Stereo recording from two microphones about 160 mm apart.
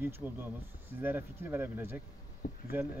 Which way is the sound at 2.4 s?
50° left (ahead or behind).